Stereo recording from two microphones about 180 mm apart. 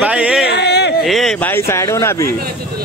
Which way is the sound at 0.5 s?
70° left (ahead or behind).